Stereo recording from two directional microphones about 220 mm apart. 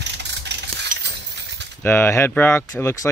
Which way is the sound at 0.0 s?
50° right (ahead or behind).